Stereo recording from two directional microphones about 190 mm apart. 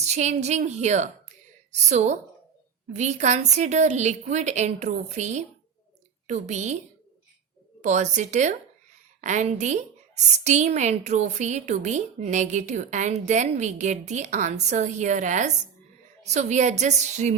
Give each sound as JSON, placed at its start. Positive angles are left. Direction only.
{"t": 0.1, "sound": "a woman's voice", "side_deg": -35}
{"t": 7.8, "sound": "a woman's voice", "side_deg": -40}